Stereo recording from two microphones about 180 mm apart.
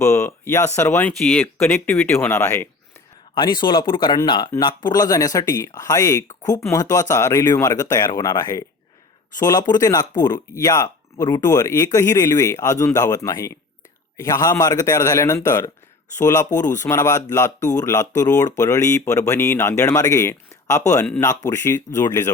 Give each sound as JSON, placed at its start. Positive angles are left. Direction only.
{"t": 0.0, "sound": "a man's voice", "side_deg": 15}
{"t": 3.3, "sound": "a man's voice", "side_deg": 25}